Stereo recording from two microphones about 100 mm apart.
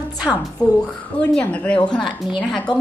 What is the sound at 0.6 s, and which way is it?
Speech, 40° left (ahead or behind).